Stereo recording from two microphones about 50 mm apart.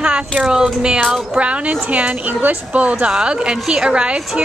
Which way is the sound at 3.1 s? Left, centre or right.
Centre.